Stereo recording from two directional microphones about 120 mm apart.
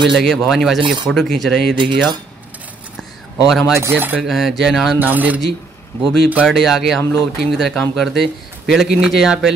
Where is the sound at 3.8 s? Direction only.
15° right (ahead or behind).